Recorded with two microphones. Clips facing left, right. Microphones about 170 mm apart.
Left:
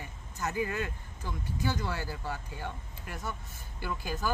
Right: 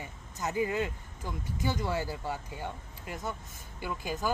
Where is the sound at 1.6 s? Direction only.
20° right (ahead or behind).